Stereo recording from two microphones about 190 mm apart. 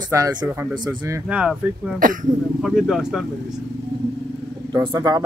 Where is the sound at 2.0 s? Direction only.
45° right (ahead or behind).